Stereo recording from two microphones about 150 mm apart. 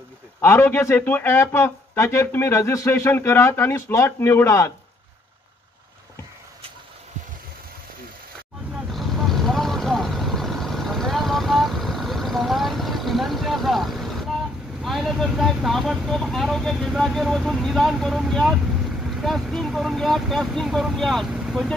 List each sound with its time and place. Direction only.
0.4 s speech: 15° left (ahead or behind)
8.9 s vehicle: centre (ahead or behind)
14.8 s speech: centre (ahead or behind)